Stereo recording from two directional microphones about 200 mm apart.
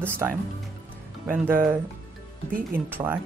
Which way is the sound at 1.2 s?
10° right (ahead or behind).